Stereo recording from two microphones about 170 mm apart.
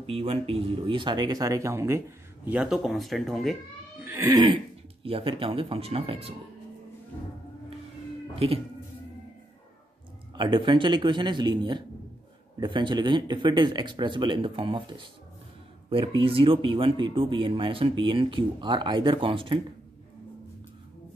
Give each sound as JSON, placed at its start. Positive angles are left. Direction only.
{"t": 0.0, "sound": "speech", "side_deg": -35}
{"t": 4.0, "sound": "speech", "side_deg": -10}
{"t": 4.3, "sound": "speech", "side_deg": -25}
{"t": 10.3, "sound": "speech", "side_deg": -30}